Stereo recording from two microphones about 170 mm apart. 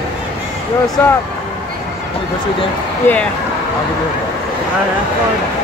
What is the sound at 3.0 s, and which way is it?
Speech, 15° left (ahead or behind).